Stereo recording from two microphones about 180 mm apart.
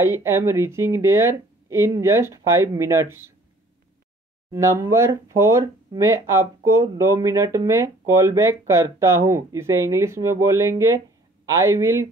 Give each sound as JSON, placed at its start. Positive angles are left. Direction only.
{"t": 0.0, "sound": "speech", "side_deg": -15}
{"t": 4.5, "sound": "speech", "side_deg": -15}